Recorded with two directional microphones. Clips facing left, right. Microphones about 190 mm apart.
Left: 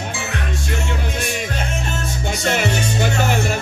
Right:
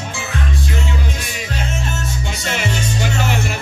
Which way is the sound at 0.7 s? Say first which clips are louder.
Even; 50° left (ahead or behind).